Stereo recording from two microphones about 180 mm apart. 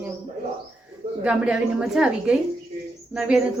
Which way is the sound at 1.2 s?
5° right (ahead or behind).